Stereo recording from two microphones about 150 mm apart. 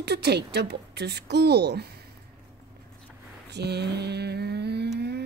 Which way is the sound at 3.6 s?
90° right.